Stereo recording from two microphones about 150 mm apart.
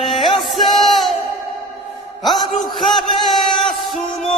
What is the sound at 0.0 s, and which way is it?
Music, centre (ahead or behind).